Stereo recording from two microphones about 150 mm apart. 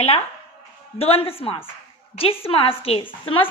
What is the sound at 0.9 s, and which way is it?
Speech, 40° left (ahead or behind).